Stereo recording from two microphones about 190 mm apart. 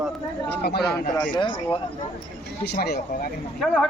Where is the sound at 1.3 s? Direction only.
25° left (ahead or behind).